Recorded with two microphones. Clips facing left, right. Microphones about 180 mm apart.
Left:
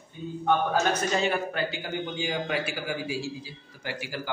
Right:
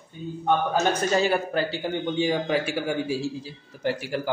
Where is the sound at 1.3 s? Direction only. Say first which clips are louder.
Right 4 dB; 35° right (ahead or behind).